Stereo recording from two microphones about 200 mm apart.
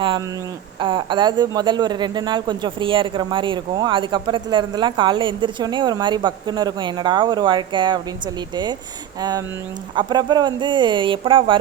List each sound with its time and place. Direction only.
0.8 s speech: 25° right (ahead or behind)
9.9 s speech: 20° right (ahead or behind)